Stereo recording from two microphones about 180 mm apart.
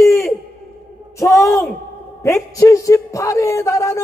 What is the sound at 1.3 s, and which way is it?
Speech, centre (ahead or behind).